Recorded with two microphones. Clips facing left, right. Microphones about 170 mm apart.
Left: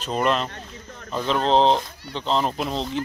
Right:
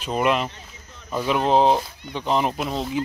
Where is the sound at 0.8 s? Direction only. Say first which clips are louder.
Left 6 dB; 60° left (ahead or behind).